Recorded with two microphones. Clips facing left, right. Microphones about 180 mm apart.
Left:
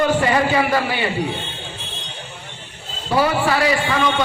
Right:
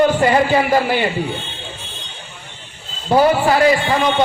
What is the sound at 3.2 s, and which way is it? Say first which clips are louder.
Speech: right 4 dB; 40° right (ahead or behind).